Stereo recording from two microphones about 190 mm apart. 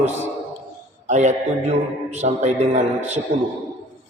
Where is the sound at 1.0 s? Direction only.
40° right (ahead or behind).